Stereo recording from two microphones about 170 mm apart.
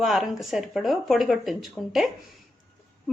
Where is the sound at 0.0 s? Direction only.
Centre (ahead or behind).